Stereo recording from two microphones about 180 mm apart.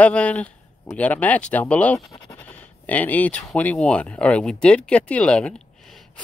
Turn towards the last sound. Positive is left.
turn(degrees=5)  # may be behind; listen again after turning